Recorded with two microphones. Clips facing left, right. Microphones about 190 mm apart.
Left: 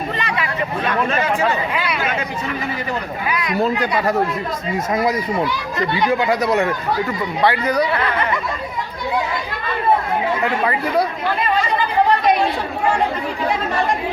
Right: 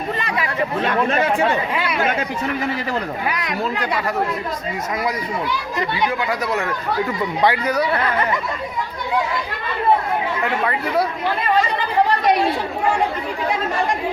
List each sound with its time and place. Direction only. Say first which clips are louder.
0.2 s hubbub: left 1 dB; 40° right (ahead or behind)
6.1 s speech: left 5 dB; 25° left (ahead or behind)
7.4 s speech: left 2 dB; 10° right (ahead or behind)
10.6 s speech: left 2 dB; 5° left (ahead or behind)